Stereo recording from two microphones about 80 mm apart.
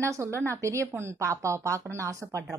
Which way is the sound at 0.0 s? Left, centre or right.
Right.